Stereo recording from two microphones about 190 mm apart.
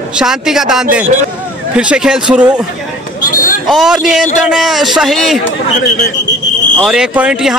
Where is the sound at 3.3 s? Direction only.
45° left (ahead or behind).